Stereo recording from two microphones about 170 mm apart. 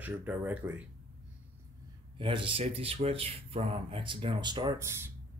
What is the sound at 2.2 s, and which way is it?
Speech, 30° right (ahead or behind).